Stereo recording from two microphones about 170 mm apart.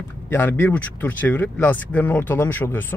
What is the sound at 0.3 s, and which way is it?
Speech, 10° left (ahead or behind).